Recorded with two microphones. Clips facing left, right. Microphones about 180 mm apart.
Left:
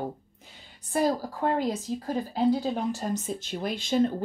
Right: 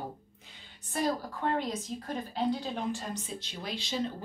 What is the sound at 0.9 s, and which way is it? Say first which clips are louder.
A woman's voice: left 5 dB; 35° left (ahead or behind).